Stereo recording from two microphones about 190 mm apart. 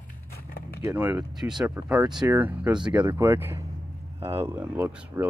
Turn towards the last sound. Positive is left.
turn(degrees=-10)  # may be behind; listen again after turning